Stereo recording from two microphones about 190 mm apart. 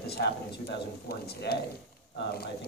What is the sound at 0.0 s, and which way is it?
Speech, 60° left (ahead or behind).